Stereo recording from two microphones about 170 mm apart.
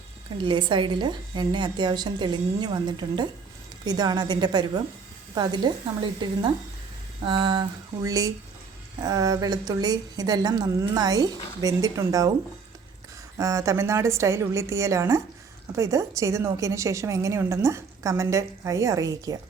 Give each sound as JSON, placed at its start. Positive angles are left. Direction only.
{"t": 0.3, "sound": "a woman's voice", "side_deg": -30}
{"t": 7.3, "sound": "a woman's voice", "side_deg": -30}
{"t": 13.4, "sound": "a woman's voice", "side_deg": -20}